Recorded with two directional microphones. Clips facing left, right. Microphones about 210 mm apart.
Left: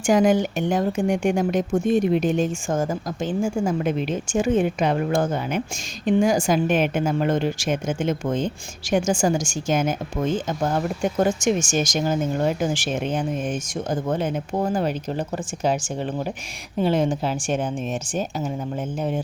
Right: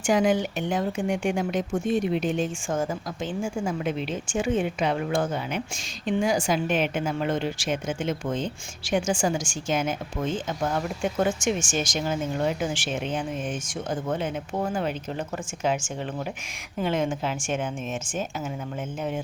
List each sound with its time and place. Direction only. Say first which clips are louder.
0.0 s a woman's voice: left 4 dB; 45° left (ahead or behind)